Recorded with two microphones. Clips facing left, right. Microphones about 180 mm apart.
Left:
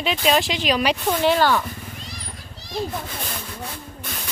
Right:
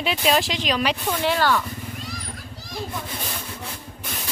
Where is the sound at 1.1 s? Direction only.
25° left (ahead or behind).